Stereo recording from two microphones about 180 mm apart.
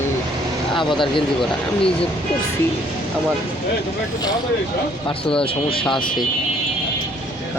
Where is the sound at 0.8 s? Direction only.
25° left (ahead or behind).